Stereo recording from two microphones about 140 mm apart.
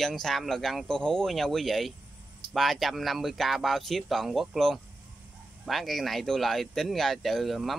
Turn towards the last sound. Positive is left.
turn(degrees=0)  # may be behind; listen again after turning